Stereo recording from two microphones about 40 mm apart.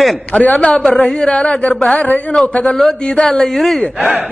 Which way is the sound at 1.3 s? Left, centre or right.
Left.